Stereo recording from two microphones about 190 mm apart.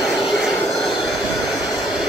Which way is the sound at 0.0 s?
Centre (ahead or behind).